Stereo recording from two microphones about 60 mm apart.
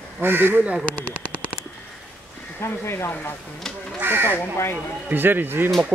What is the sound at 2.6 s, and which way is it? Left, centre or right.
Speech, left.